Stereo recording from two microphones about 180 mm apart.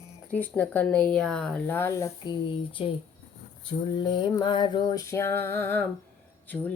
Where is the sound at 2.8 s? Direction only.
30° left (ahead or behind).